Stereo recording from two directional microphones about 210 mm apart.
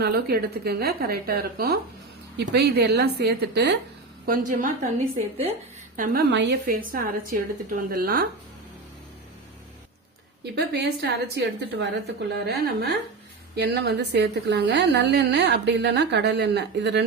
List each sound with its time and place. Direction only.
0.0 s a woman's voice: 45° right (ahead or behind)
4.3 s a woman's voice: 40° right (ahead or behind)
6.0 s a woman's voice: 50° right (ahead or behind)
10.5 s a woman's voice: 50° right (ahead or behind)